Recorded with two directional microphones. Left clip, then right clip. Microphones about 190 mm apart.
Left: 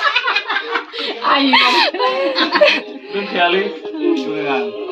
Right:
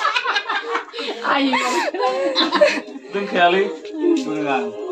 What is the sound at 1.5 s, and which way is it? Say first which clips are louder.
Speech: left 7 dB; 5° right (ahead or behind).